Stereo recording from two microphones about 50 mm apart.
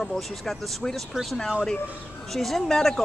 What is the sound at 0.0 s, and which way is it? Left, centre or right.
Speech, centre.